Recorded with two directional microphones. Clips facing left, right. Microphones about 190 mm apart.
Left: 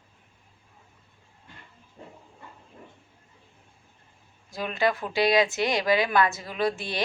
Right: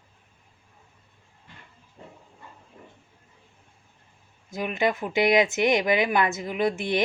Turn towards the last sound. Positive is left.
turn(degrees=-20)  # may be behind; listen again after turning